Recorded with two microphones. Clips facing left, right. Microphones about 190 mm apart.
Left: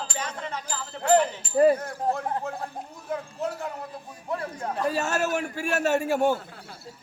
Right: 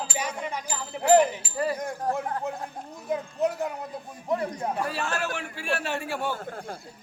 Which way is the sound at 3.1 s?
15° right (ahead or behind).